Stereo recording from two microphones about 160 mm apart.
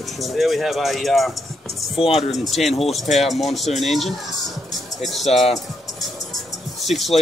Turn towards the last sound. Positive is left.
turn(degrees=0)  # may be behind; listen again after turning